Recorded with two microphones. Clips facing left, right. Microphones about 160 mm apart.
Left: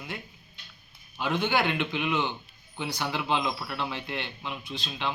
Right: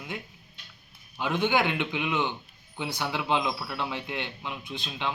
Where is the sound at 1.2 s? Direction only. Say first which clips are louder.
Right 1 dB; 15° right (ahead or behind).